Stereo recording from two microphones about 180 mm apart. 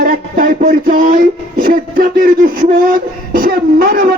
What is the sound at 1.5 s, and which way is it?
Music, 50° right (ahead or behind).